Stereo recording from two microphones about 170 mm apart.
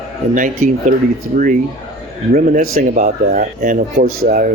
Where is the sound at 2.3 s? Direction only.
55° right (ahead or behind).